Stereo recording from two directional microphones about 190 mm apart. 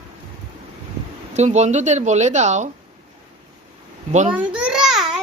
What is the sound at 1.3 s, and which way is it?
Speech, 35° right (ahead or behind).